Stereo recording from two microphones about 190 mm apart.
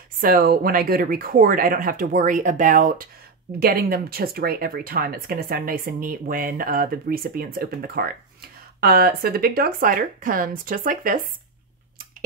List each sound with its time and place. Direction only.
0.2 s speech: 50° right (ahead or behind)